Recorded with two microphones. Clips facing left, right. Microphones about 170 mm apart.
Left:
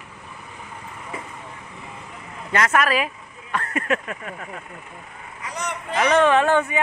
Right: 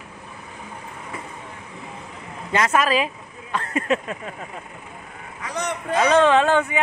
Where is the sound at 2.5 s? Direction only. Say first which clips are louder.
Right 1 dB; 20° right (ahead or behind).